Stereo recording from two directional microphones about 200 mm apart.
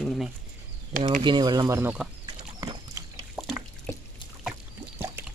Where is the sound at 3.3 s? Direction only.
5° left (ahead or behind).